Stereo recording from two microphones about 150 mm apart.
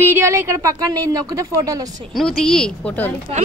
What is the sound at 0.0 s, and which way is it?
Speech, 20° right (ahead or behind).